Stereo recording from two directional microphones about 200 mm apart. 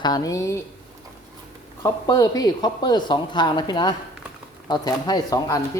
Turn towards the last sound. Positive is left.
turn(degrees=15)  # may be behind; listen again after turning